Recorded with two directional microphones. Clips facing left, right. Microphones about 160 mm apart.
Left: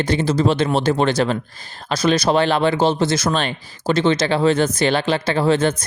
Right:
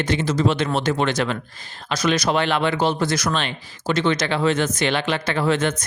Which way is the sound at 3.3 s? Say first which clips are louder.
Left 3 dB; 40° left (ahead or behind).